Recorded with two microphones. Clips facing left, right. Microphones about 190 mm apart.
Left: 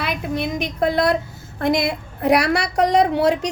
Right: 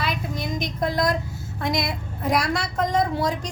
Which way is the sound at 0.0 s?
65° left (ahead or behind).